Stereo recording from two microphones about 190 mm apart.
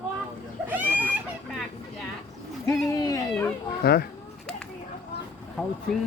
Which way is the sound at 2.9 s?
20° left (ahead or behind).